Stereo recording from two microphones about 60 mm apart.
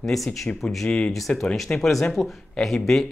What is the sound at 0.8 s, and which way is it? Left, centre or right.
Speech, centre.